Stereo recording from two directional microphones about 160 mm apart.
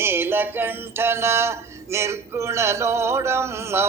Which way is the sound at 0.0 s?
15° right (ahead or behind).